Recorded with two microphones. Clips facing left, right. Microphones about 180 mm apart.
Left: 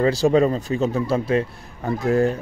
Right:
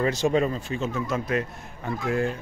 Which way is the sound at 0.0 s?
35° left (ahead or behind).